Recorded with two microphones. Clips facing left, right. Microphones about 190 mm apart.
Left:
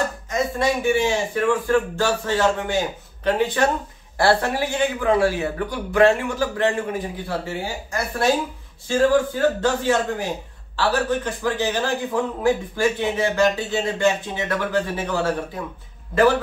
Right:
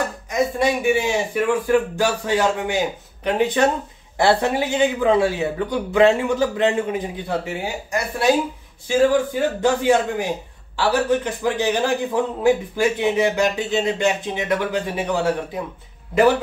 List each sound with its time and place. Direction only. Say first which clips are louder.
0.3 s a man's voice: right 3 dB; 15° right (ahead or behind)